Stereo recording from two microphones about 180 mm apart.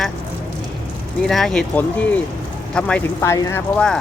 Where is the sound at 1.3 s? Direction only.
Centre (ahead or behind).